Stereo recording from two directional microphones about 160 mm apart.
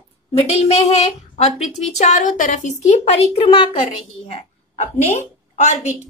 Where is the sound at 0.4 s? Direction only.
40° left (ahead or behind).